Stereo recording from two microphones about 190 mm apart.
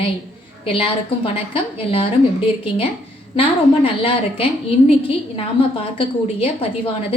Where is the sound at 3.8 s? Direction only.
30° left (ahead or behind).